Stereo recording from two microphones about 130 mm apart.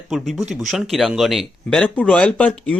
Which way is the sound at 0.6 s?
Centre (ahead or behind).